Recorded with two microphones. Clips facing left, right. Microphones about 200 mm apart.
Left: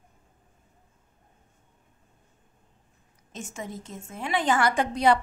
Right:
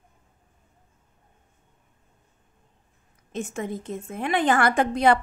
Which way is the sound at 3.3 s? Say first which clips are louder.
Right 7 dB; 60° right (ahead or behind).